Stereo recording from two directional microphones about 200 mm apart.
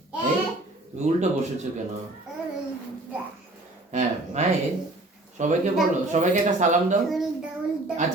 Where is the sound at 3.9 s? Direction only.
35° right (ahead or behind).